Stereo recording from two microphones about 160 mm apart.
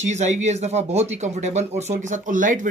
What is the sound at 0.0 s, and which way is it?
Speech, 45° right (ahead or behind).